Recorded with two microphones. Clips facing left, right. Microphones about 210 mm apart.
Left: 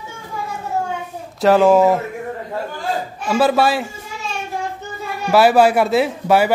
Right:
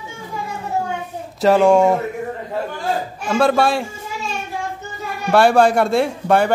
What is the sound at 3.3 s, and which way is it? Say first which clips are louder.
Speech: even; 5° left (ahead or behind).